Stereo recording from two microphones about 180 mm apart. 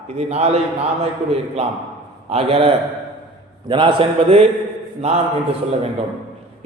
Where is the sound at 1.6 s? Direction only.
35° right (ahead or behind).